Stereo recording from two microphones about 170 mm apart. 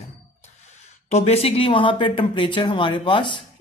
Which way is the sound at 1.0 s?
40° left (ahead or behind).